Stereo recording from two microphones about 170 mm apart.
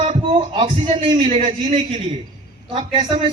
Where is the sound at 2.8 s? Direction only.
30° right (ahead or behind).